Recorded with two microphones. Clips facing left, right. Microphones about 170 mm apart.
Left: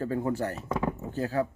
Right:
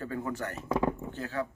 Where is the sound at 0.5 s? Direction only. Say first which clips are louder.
Right 1 dB; centre (ahead or behind).